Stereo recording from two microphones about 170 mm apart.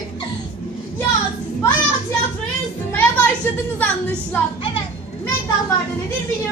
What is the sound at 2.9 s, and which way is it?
Music, 10° left (ahead or behind).